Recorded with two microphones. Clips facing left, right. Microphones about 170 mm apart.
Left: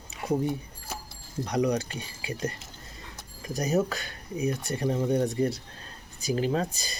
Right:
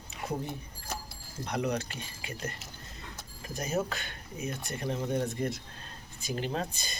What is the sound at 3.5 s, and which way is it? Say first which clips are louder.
Speech: left 6 dB; 40° left (ahead or behind).